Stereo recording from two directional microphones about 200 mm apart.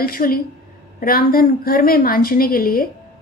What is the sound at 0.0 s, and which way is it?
A woman's voice, 45° left (ahead or behind).